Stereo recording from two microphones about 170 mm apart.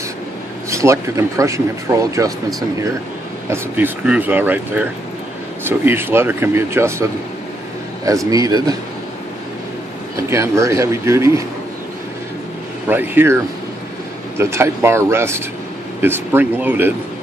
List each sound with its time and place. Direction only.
0.7 s speech: 15° right (ahead or behind)
3.4 s a man's voice: 15° right (ahead or behind)
10.3 s speech: 15° right (ahead or behind)
12.8 s speech: 10° right (ahead or behind)